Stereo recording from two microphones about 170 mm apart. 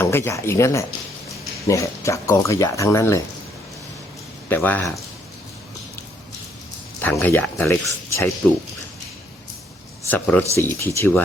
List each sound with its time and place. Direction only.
0.0 s speech: 15° left (ahead or behind)
4.4 s speech: 10° left (ahead or behind)
7.0 s speech: 10° left (ahead or behind)
10.1 s speech: 10° left (ahead or behind)